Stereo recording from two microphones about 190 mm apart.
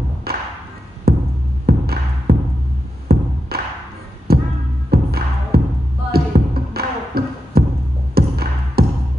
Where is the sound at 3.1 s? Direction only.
55° right (ahead or behind).